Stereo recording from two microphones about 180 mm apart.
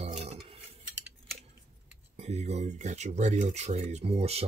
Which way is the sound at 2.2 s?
35° right (ahead or behind).